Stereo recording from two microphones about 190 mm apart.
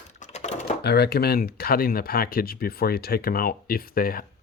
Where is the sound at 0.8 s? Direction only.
60° left (ahead or behind).